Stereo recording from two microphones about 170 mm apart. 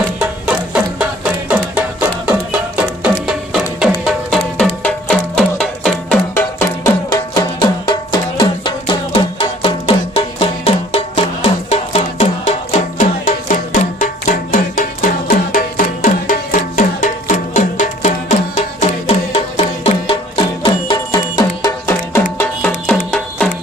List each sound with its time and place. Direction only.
0.2 s music: 10° right (ahead or behind)
6.6 s music: 20° left (ahead or behind)
23.1 s music: 5° left (ahead or behind)